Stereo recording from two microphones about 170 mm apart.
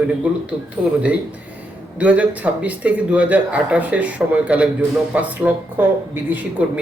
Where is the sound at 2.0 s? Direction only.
10° right (ahead or behind).